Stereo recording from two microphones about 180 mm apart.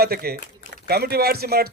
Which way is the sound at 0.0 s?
60° right (ahead or behind).